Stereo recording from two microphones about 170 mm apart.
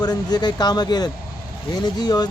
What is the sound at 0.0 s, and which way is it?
Speech, 25° left (ahead or behind).